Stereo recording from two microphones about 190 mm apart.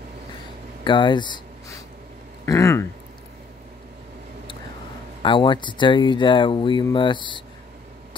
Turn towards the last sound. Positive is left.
turn(degrees=25)  # may be behind; listen again after turning